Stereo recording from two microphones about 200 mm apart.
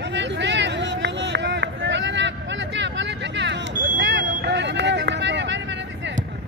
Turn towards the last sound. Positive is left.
turn(degrees=-65)  # may be behind; listen again after turning